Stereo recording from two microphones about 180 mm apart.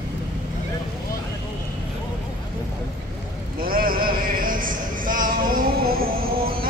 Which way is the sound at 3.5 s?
50° right (ahead or behind).